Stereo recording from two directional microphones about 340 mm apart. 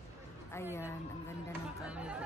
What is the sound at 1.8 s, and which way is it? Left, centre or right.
Speech, centre.